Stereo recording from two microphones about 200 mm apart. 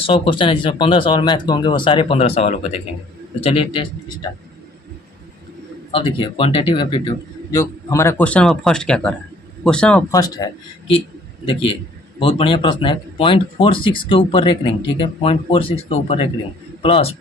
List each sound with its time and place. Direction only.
0.0 s speech: 25° left (ahead or behind)
5.9 s speech: 25° left (ahead or behind); by 10.0 s 5° left (ahead or behind)
10.1 s speech: 20° left (ahead or behind)
12.2 s speech: 25° left (ahead or behind)